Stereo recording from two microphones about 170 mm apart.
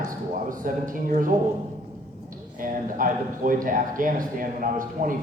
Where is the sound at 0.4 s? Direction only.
50° right (ahead or behind).